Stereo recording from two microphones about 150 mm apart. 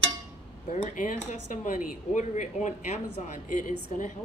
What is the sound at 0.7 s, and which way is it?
A woman's voice, 60° left (ahead or behind).